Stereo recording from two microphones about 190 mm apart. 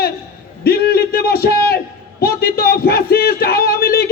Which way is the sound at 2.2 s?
55° left (ahead or behind).